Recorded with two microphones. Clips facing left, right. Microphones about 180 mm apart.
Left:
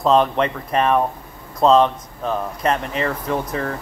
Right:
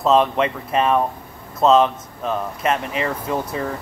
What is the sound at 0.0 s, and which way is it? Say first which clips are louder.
Speech: even; centre (ahead or behind).